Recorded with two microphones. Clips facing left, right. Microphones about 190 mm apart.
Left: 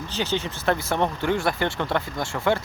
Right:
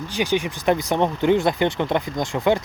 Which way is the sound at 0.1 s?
15° right (ahead or behind).